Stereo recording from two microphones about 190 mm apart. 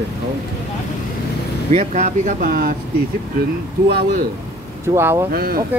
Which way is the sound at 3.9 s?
60° right (ahead or behind).